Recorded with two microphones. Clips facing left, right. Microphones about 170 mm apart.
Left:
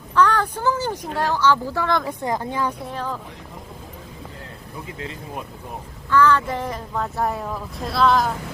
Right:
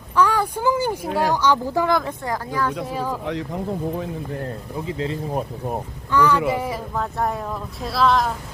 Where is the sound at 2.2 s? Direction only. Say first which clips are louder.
Even; 20° left (ahead or behind).